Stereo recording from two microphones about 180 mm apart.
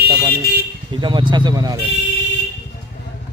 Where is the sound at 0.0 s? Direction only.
60° right (ahead or behind).